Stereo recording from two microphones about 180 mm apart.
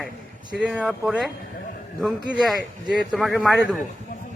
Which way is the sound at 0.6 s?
5° right (ahead or behind).